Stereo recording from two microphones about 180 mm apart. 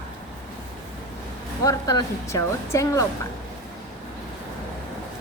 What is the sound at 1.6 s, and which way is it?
A woman's voice, 20° left (ahead or behind).